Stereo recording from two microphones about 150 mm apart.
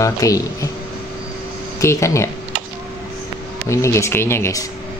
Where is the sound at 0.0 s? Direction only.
20° left (ahead or behind).